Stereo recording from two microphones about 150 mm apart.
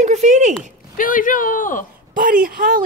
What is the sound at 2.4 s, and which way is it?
Speech, 70° right (ahead or behind).